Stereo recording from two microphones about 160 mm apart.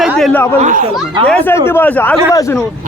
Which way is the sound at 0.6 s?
55° right (ahead or behind).